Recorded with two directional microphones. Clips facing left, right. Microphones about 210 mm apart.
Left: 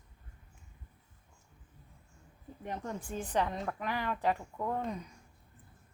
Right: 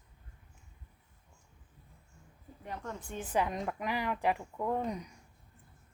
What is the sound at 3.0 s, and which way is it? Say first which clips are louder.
A woman's voice: right 1 dB; centre (ahead or behind).